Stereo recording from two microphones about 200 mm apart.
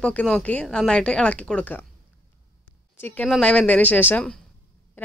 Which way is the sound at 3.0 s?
10° left (ahead or behind).